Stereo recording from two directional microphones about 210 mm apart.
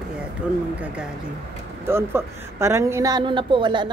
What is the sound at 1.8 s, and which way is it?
A woman's voice, 10° right (ahead or behind).